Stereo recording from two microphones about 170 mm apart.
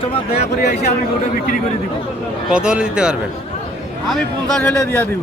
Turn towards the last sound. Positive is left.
turn(degrees=10)  # may be behind; listen again after turning